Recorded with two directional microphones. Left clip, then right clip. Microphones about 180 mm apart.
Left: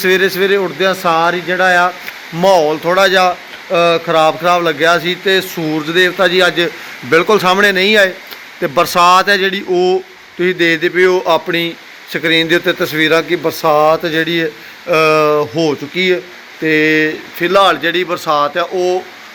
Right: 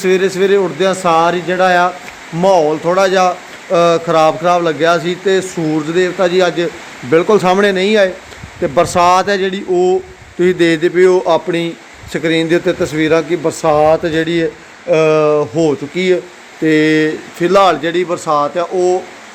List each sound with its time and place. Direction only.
0.0 s speech: centre (ahead or behind)
2.4 s a man's voice: centre (ahead or behind)
10.4 s a man's voice: 20° right (ahead or behind)